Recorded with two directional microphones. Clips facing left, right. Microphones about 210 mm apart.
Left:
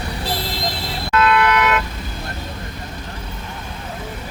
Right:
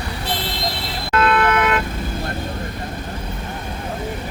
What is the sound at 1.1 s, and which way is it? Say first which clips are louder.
Vehicle: even; 50° right (ahead or behind).